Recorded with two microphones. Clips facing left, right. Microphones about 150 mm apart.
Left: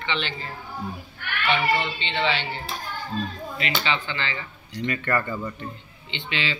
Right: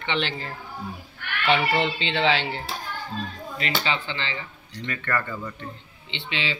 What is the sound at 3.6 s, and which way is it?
Speech, 30° right (ahead or behind).